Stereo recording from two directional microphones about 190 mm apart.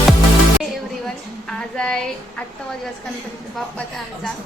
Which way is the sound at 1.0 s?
5° left (ahead or behind).